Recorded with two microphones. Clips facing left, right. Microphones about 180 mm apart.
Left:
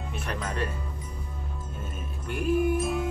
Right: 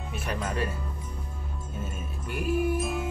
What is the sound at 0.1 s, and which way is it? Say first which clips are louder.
Music: right 2 dB; 5° right (ahead or behind).